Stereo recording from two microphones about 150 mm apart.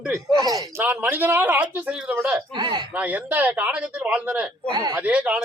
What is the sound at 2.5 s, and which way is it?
Speech, 30° right (ahead or behind).